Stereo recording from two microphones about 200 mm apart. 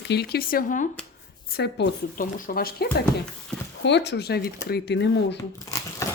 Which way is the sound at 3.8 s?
60° left (ahead or behind).